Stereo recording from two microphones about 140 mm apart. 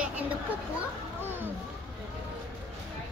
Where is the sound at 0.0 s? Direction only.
10° right (ahead or behind).